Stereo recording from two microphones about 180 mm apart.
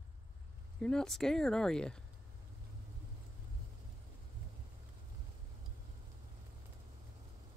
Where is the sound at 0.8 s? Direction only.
5° left (ahead or behind).